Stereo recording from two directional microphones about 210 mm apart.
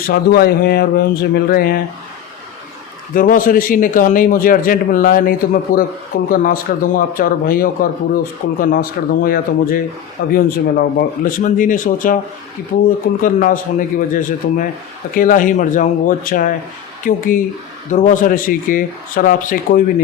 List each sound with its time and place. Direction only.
0.1 s a man's voice: 50° left (ahead or behind)
3.2 s a man's voice: 40° left (ahead or behind)